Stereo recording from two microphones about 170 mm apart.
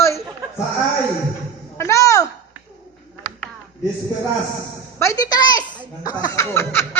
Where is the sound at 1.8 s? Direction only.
15° left (ahead or behind).